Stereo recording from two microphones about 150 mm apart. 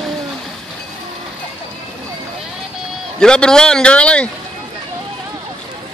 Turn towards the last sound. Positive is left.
turn(degrees=5)  # may be behind; listen again after turning